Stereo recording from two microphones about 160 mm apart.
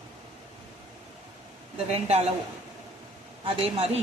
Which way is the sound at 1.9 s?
40° right (ahead or behind).